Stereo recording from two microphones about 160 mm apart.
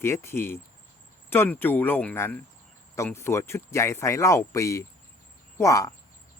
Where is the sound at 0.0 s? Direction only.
15° left (ahead or behind).